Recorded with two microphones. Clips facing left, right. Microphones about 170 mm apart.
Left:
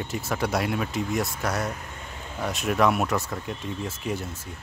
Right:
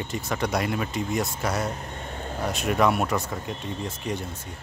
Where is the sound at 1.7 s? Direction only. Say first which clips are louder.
Right 2 dB; 35° right (ahead or behind).